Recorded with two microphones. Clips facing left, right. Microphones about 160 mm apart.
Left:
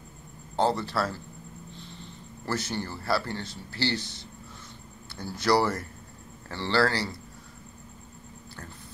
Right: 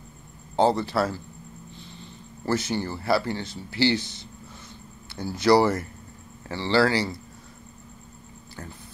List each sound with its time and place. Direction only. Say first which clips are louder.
0.6 s speech: right 4 dB; 15° right (ahead or behind)
2.4 s speech: right 5 dB; 10° right (ahead or behind)
5.2 s speech: right 5 dB; 15° right (ahead or behind)